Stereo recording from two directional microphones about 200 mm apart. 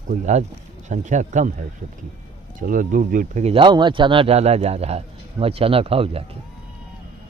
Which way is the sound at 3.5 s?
25° right (ahead or behind).